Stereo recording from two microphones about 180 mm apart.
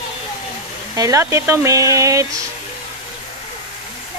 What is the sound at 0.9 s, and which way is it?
Speech, 20° right (ahead or behind).